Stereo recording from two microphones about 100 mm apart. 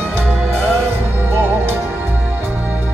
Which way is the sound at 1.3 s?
20° right (ahead or behind).